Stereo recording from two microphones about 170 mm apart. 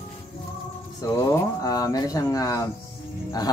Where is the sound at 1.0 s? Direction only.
20° left (ahead or behind).